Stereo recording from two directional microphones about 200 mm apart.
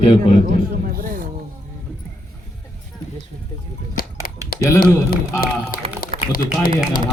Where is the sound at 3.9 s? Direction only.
45° left (ahead or behind).